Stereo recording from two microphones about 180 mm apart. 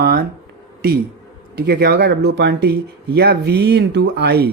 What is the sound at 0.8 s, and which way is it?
A man's voice, 55° right (ahead or behind).